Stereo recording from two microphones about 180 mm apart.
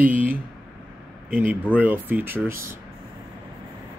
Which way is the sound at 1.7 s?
10° right (ahead or behind).